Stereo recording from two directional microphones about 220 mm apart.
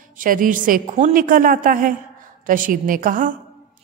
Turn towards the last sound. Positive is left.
turn(degrees=-40)  # may be behind; listen again after turning